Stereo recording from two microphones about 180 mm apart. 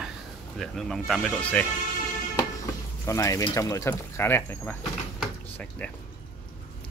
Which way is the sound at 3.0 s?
15° left (ahead or behind).